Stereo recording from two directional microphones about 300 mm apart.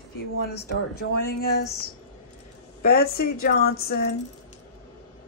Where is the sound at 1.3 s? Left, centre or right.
Left.